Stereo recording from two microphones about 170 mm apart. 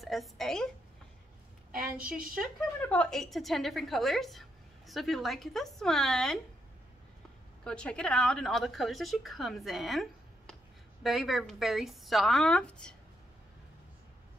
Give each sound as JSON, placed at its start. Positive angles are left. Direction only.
{"t": 0.0, "sound": "a woman's voice", "side_deg": 0}
{"t": 1.7, "sound": "a woman's voice", "side_deg": -55}
{"t": 2.8, "sound": "a woman's voice", "side_deg": 5}
{"t": 7.6, "sound": "a woman's voice", "side_deg": 5}